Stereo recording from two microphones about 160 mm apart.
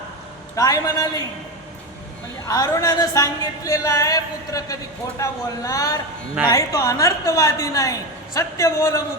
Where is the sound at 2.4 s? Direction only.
20° left (ahead or behind).